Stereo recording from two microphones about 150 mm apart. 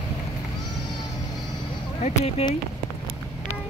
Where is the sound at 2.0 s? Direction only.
50° left (ahead or behind).